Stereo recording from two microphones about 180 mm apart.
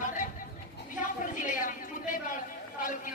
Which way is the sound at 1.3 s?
45° left (ahead or behind).